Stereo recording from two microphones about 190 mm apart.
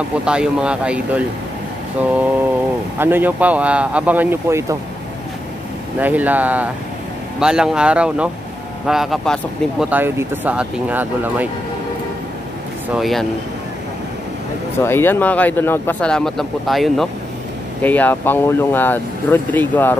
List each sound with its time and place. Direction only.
0.2 s speech: 5° right (ahead or behind)
3.0 s speech: 10° right (ahead or behind)
5.9 s speech: 10° right (ahead or behind)
9.8 s speech: 10° right (ahead or behind)
12.9 s speech: centre (ahead or behind)
14.8 s speech: 10° left (ahead or behind)